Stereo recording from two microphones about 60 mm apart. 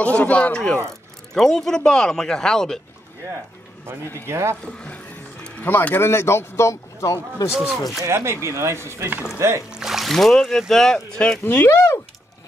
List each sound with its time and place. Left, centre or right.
0.0 s speech: left
1.3 s speech: centre
4.3 s speech: right
4.6 s music: left
5.6 s speech: left
7.5 s speech: centre
8.0 s speech: right
9.7 s a sound: centre
10.1 s speech: centre
11.4 s speech: left
11.7 s speech: left